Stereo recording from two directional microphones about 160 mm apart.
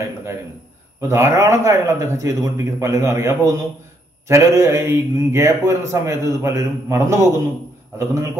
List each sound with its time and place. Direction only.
0.0 s a man's voice: 15° right (ahead or behind)